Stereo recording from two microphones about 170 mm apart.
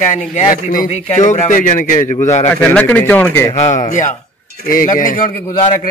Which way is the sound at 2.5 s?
10° left (ahead or behind).